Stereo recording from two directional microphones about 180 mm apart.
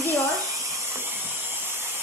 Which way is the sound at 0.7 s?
15° right (ahead or behind).